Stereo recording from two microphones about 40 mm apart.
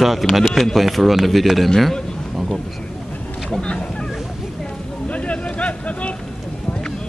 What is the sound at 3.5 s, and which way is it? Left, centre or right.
Speech, left.